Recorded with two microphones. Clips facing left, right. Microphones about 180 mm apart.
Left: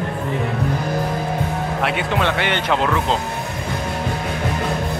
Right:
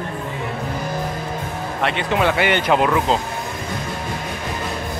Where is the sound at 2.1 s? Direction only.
10° right (ahead or behind).